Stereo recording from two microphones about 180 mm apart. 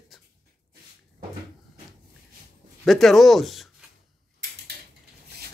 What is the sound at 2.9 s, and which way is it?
Speech, centre (ahead or behind).